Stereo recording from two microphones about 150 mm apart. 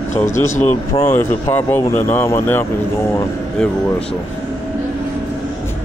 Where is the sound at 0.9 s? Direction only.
25° left (ahead or behind).